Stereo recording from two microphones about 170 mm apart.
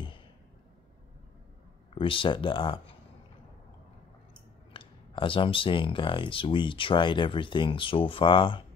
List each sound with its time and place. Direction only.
2.0 s speech: 30° left (ahead or behind)
4.7 s speech: 30° left (ahead or behind)